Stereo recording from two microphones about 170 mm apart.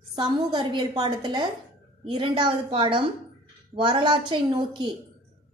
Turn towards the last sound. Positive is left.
turn(degrees=-25)  # may be behind; listen again after turning